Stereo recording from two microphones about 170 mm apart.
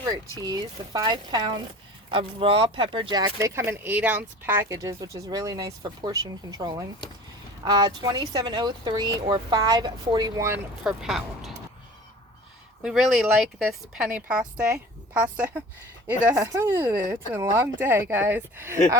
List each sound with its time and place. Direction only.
0.4 s speech: 25° right (ahead or behind)
10.8 s a woman's voice: centre (ahead or behind)
12.8 s a woman's voice: 5° right (ahead or behind)